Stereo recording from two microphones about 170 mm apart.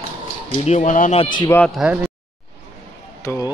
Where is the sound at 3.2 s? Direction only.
20° left (ahead or behind).